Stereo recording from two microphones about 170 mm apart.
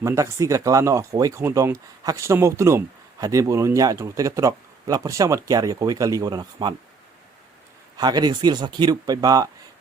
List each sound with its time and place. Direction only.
0.0 s speech: 20° right (ahead or behind)
7.9 s speech: 25° right (ahead or behind)